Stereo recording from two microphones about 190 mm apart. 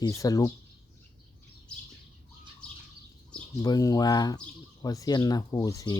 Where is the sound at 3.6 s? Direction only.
20° left (ahead or behind).